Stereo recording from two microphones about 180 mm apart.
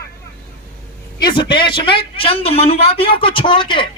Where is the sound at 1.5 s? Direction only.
25° left (ahead or behind).